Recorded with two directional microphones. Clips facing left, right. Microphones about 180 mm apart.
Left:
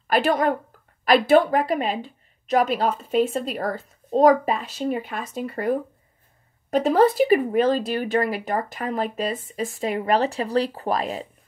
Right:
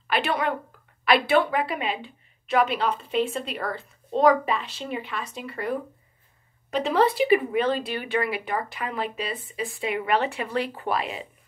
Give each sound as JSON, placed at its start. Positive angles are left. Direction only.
{"t": 0.1, "sound": "a woman's voice", "side_deg": 45}